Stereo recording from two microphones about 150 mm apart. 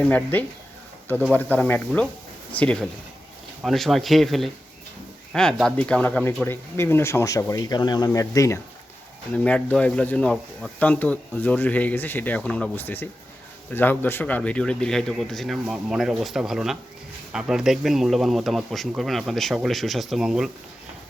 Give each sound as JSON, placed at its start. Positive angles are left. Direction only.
{"t": 0.1, "sound": "speech", "side_deg": 10}
{"t": 9.3, "sound": "speech", "side_deg": 10}